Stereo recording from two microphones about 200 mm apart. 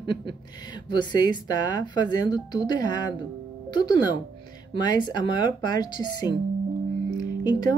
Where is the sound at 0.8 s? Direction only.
20° left (ahead or behind).